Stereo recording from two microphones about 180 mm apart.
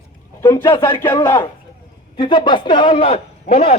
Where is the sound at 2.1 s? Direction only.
25° left (ahead or behind).